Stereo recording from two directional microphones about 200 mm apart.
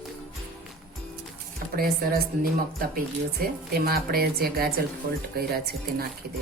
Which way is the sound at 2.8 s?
50° right (ahead or behind).